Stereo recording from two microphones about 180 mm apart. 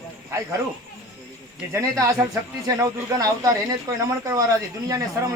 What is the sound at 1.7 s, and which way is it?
A man's voice, 15° right (ahead or behind).